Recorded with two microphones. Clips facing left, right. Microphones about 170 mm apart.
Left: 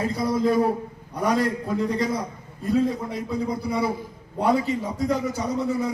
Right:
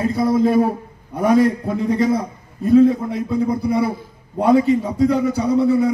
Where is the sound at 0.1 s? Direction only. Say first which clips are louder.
Right 6 dB; 55° right (ahead or behind).